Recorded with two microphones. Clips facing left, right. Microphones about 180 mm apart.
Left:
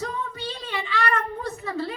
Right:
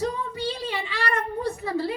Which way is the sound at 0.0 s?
10° right (ahead or behind).